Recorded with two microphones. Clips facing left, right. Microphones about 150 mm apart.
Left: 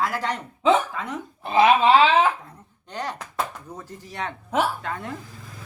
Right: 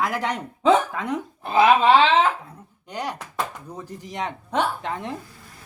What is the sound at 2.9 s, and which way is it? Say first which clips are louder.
Speech: right 1 dB; 10° right (ahead or behind).